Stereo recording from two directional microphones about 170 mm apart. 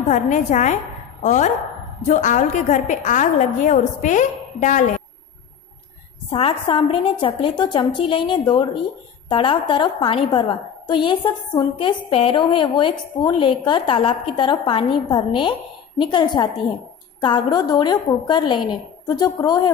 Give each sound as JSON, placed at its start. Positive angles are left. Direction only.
{"t": 0.1, "sound": "a woman's voice", "side_deg": 45}
{"t": 6.3, "sound": "a woman's voice", "side_deg": 30}